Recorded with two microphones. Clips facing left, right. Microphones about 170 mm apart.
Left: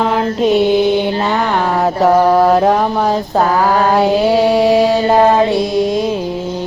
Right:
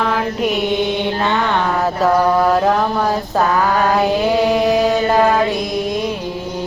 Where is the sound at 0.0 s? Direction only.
25° left (ahead or behind).